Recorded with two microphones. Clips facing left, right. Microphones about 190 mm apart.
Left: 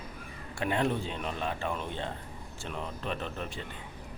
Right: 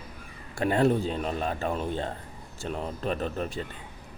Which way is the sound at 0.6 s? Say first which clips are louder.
Right 6 dB; 40° right (ahead or behind).